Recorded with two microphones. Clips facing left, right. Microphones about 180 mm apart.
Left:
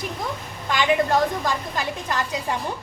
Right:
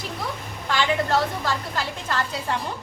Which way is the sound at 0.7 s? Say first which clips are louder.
Left 2 dB; 15° left (ahead or behind).